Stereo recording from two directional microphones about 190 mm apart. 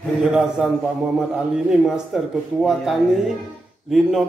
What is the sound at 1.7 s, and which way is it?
Speech, centre (ahead or behind).